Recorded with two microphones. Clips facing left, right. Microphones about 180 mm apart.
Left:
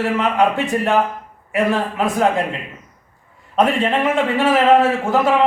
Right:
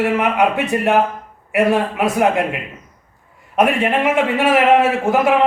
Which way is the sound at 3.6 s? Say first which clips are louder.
Right 1 dB; 10° right (ahead or behind).